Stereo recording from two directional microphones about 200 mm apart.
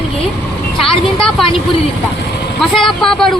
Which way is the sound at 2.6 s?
Centre (ahead or behind).